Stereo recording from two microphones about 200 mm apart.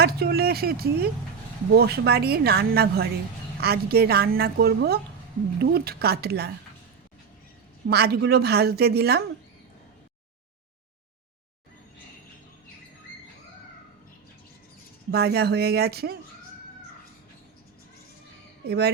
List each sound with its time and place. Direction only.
0.0 s a woman's voice: 50° right (ahead or behind)
7.9 s a woman's voice: 55° right (ahead or behind)
15.1 s a woman's voice: 55° right (ahead or behind)